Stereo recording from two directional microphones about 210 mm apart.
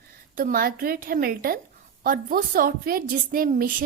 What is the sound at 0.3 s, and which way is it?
A woman's voice, 40° right (ahead or behind).